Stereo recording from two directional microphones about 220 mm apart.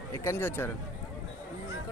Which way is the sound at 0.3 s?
10° left (ahead or behind).